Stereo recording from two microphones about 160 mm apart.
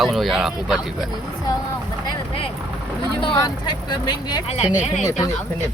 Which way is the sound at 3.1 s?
30° left (ahead or behind).